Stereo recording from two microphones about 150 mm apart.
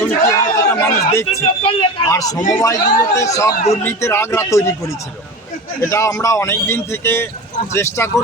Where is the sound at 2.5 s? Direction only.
20° left (ahead or behind).